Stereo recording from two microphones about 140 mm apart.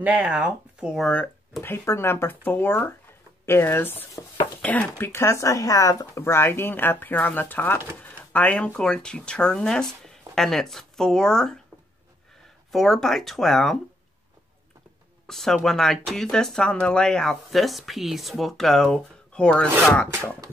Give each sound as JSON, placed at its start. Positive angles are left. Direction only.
{"t": 0.0, "sound": "speech", "side_deg": -10}
{"t": 1.0, "sound": "speech", "side_deg": 10}
{"t": 12.7, "sound": "speech", "side_deg": 0}
{"t": 15.2, "sound": "speech", "side_deg": 0}